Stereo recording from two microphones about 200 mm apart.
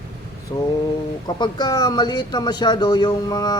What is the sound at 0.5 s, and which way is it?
A man's voice, 20° left (ahead or behind).